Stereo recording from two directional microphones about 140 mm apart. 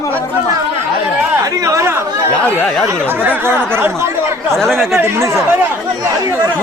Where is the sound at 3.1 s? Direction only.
15° right (ahead or behind).